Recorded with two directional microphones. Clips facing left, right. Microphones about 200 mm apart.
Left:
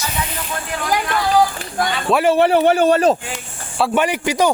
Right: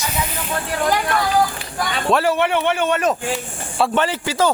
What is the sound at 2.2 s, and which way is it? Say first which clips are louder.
Speech: left 5 dB; 35° left (ahead or behind).